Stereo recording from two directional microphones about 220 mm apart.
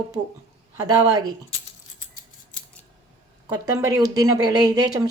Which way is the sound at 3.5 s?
15° right (ahead or behind).